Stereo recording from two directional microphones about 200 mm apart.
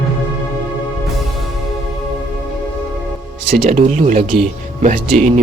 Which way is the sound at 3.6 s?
35° right (ahead or behind).